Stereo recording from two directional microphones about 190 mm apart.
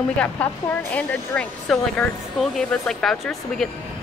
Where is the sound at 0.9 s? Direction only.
10° left (ahead or behind).